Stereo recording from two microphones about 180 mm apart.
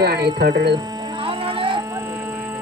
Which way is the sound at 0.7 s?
25° right (ahead or behind).